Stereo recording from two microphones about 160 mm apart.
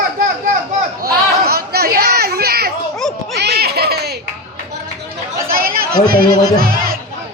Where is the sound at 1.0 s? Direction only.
75° right (ahead or behind).